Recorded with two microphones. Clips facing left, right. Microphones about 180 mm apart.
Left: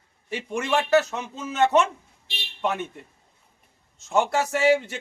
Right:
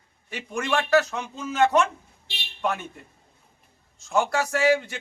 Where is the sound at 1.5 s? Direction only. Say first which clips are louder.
Even; 20° left (ahead or behind).